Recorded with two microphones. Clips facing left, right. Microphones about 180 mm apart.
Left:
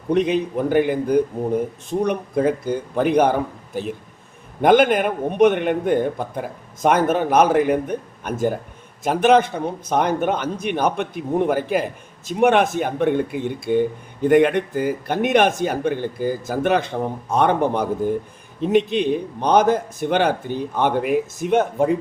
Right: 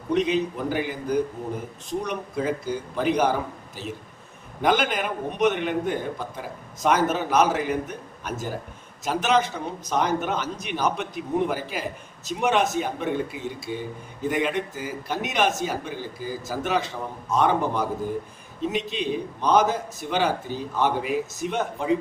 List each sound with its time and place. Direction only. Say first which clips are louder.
0.1 s a man's voice: left 4 dB; 55° left (ahead or behind)